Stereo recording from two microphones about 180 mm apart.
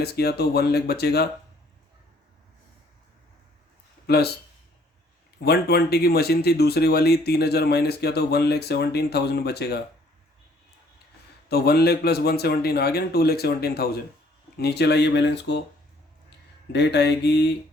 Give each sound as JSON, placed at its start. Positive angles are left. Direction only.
{"t": 0.0, "sound": "speech", "side_deg": 60}
{"t": 4.0, "sound": "speech", "side_deg": 65}
{"t": 5.4, "sound": "speech", "side_deg": 65}
{"t": 11.4, "sound": "speech", "side_deg": 60}
{"t": 16.7, "sound": "speech", "side_deg": 70}